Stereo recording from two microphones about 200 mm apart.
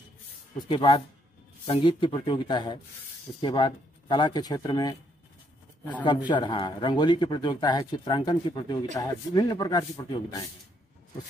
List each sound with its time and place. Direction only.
0.6 s speech: 25° left (ahead or behind)
6.0 s speech: 25° left (ahead or behind)